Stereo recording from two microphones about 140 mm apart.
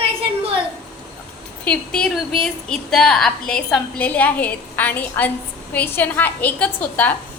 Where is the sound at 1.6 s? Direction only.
5° left (ahead or behind).